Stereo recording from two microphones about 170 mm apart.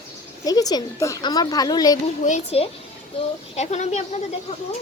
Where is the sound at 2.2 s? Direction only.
40° left (ahead or behind).